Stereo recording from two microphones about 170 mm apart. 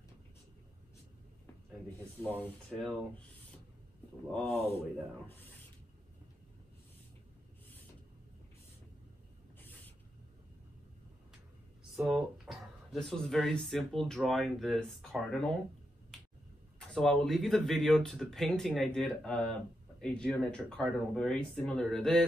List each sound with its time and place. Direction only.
2.4 s speech: 5° left (ahead or behind)
9.6 s a sound: 10° left (ahead or behind)
12.0 s speech: 5° right (ahead or behind)
16.9 s speech: 5° left (ahead or behind)